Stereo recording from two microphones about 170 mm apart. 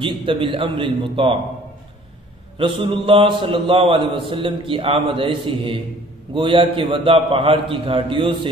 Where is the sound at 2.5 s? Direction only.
30° right (ahead or behind).